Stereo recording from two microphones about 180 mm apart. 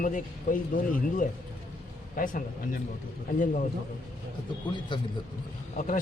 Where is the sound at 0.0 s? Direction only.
50° left (ahead or behind).